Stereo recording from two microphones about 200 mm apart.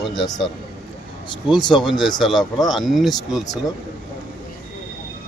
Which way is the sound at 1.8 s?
Centre (ahead or behind).